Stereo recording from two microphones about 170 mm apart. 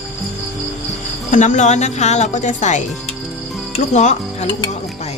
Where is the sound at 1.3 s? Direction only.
45° left (ahead or behind).